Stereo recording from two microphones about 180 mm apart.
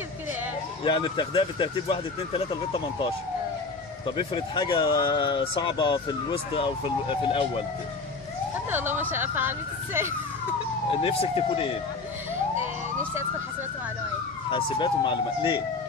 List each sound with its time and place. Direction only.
0.8 s speech: 25° left (ahead or behind)
8.6 s speech: 10° right (ahead or behind)
10.9 s speech: 30° left (ahead or behind)
14.5 s speech: 25° left (ahead or behind)